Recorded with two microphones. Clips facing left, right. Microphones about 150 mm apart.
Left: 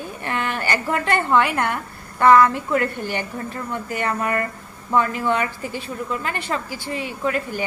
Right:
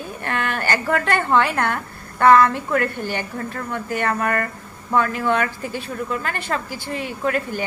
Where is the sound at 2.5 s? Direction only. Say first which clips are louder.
Even; 60° right (ahead or behind).